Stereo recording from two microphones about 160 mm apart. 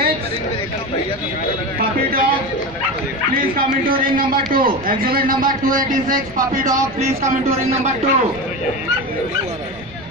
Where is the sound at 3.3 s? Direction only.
60° right (ahead or behind).